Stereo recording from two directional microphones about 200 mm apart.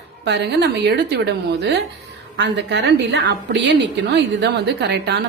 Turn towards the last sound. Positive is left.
turn(degrees=-55)  # may be behind; listen again after turning